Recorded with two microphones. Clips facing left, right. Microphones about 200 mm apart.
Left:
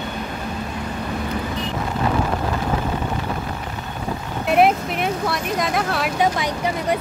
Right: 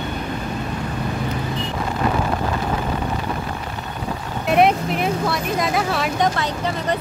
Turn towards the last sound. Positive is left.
turn(degrees=0)  # may be behind; listen again after turning